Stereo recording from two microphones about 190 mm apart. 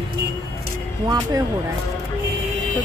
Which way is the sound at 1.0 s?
20° right (ahead or behind).